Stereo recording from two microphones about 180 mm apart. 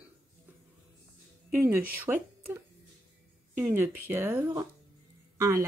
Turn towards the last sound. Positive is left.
turn(degrees=-15)  # may be behind; listen again after turning